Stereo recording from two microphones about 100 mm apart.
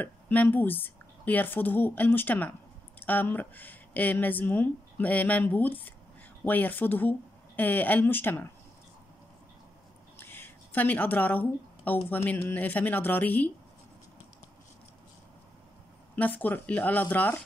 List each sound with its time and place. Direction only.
0.0 s a woman's voice: 15° left (ahead or behind)
10.1 s a sound: 20° left (ahead or behind)
12.3 s a woman's voice: 20° left (ahead or behind)
16.2 s speech: 15° left (ahead or behind)